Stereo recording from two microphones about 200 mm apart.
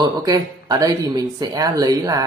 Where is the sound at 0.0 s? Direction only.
20° right (ahead or behind).